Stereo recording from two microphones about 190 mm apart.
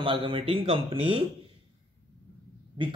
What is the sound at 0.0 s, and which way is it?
Speech, 30° right (ahead or behind).